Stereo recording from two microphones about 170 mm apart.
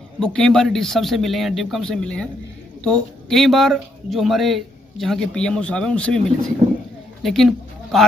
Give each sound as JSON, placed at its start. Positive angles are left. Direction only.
{"t": 0.2, "sound": "speech", "side_deg": 5}